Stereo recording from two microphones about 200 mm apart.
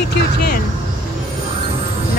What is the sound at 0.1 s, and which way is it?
Speech, 50° left (ahead or behind).